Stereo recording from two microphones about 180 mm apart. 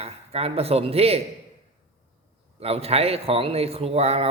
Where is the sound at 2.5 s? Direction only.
35° right (ahead or behind).